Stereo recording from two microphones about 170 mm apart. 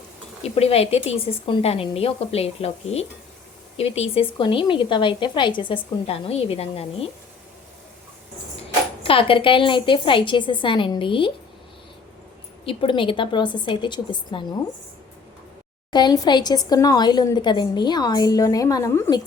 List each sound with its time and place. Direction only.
0.4 s a woman's voice: 35° left (ahead or behind)
9.0 s a woman's voice: 30° left (ahead or behind)
12.6 s a woman's voice: 30° left (ahead or behind)
15.9 s a woman's voice: 25° left (ahead or behind)